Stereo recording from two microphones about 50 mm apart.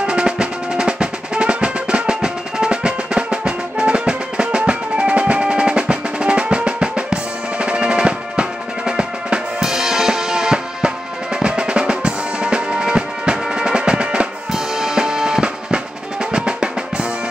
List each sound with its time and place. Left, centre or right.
0.0 s music: centre
11.3 s drum: centre